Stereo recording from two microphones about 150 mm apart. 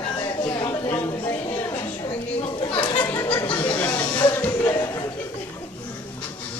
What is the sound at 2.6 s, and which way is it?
Chatter, 35° left (ahead or behind).